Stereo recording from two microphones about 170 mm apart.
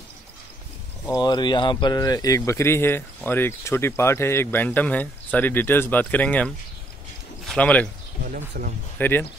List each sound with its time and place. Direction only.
1.0 s speech: 25° left (ahead or behind); by 7.9 s 5° left (ahead or behind)
8.3 s speech: 55° right (ahead or behind)
8.9 s speech: 10° left (ahead or behind)